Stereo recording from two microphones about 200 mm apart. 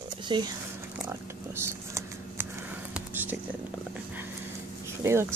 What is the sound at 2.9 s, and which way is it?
Whispering, 10° right (ahead or behind).